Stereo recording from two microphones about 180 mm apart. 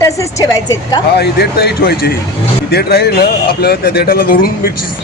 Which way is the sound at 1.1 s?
65° left (ahead or behind).